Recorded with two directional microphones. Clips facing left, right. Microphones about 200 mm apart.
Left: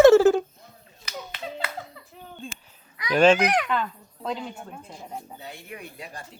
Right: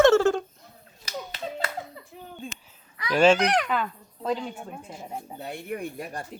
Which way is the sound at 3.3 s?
5° left (ahead or behind).